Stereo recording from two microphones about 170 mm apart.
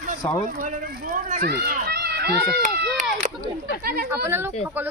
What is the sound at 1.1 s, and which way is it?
Speech, 50° right (ahead or behind).